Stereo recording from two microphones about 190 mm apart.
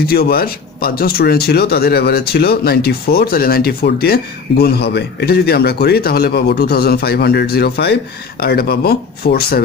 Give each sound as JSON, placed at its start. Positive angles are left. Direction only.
{"t": 0.0, "sound": "speech", "side_deg": 55}